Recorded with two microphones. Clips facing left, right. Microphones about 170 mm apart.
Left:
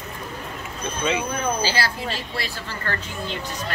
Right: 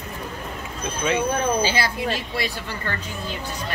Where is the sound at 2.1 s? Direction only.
20° right (ahead or behind).